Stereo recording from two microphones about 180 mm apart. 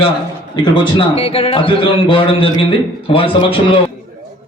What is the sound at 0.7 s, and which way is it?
A man's voice, 25° left (ahead or behind).